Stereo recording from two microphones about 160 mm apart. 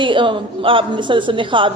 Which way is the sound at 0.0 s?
30° right (ahead or behind).